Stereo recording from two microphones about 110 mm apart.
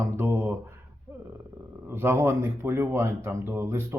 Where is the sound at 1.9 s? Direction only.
20° right (ahead or behind).